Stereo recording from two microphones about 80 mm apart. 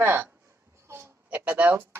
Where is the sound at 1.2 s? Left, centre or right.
Centre.